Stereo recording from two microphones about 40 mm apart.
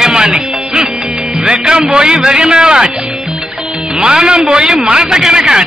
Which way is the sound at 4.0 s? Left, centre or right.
Centre.